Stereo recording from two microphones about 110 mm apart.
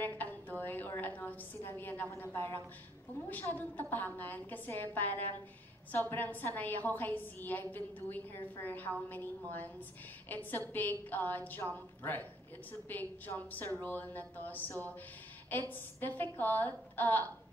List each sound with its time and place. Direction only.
0.0 s a sound: 15° left (ahead or behind)
3.3 s a woman's voice: 15° left (ahead or behind)
10.3 s a woman's voice: 15° left (ahead or behind)
16.0 s a woman's voice: 15° left (ahead or behind)